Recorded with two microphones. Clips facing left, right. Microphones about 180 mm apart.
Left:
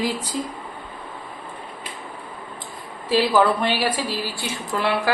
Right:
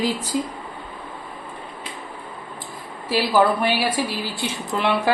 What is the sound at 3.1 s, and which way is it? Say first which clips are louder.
A woman's voice: even; 10° right (ahead or behind).